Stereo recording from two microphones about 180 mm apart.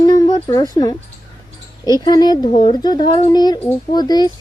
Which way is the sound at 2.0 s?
20° left (ahead or behind).